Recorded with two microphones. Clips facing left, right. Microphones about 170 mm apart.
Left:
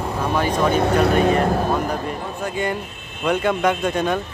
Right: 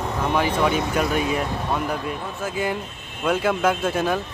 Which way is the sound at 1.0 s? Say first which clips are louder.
Left 6 dB; 60° left (ahead or behind).